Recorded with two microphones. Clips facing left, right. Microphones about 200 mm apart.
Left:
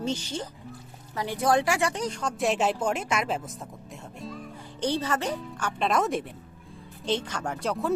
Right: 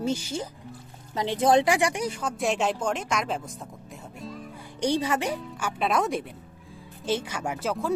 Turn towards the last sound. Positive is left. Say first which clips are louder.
# even
turn(degrees=0)  # may be behind; listen again after turning